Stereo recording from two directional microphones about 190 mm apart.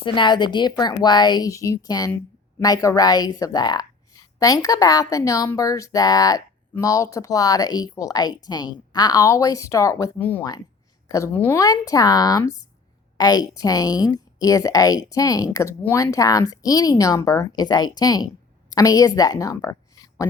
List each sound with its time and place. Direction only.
0.0 s a woman's voice: 25° left (ahead or behind)